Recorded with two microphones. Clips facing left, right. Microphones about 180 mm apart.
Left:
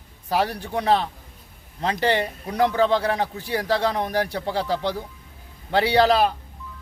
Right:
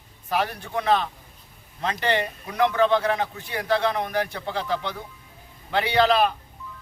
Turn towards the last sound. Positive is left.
turn(degrees=35)  # may be behind; listen again after turning